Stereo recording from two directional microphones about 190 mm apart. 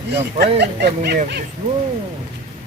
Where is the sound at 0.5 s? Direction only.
60° right (ahead or behind).